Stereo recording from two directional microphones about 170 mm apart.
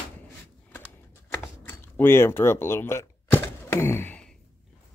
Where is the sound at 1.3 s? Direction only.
10° left (ahead or behind).